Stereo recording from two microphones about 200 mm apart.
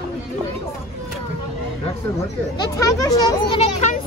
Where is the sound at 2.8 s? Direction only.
15° left (ahead or behind).